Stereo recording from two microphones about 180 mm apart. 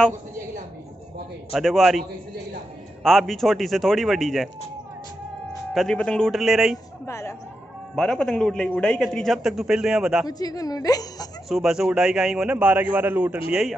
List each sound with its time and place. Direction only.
1.5 s a man's voice: centre (ahead or behind)
5.8 s a man's voice: 5° left (ahead or behind)
7.1 s a woman's voice: 15° left (ahead or behind)
7.9 s a man's voice: centre (ahead or behind)
10.2 s a woman's voice: 20° left (ahead or behind)
11.4 s a man's voice: centre (ahead or behind)